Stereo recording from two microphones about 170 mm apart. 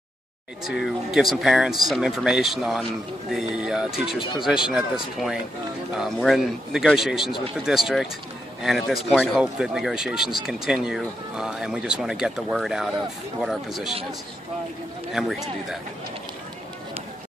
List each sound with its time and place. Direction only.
0.7 s speech: centre (ahead or behind)
4.2 s speech: 30° left (ahead or behind)
4.5 s speech: 5° right (ahead or behind)
15.1 s speech: centre (ahead or behind)